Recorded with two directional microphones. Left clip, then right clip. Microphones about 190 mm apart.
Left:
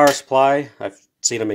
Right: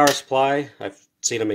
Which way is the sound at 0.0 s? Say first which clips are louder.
Left 4 dB; 15° left (ahead or behind).